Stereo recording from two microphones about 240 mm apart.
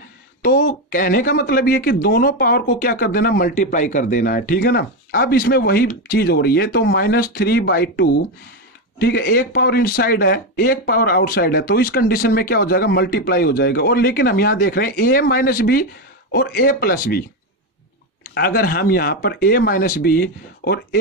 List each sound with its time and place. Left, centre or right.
0.4 s speech: left
18.3 s speech: left